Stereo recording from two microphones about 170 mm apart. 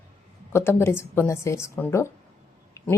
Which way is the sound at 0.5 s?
15° left (ahead or behind).